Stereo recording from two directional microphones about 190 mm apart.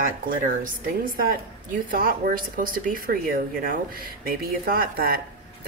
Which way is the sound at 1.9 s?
50° right (ahead or behind).